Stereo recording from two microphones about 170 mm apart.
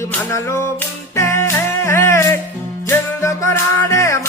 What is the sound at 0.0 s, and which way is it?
Music, 15° left (ahead or behind).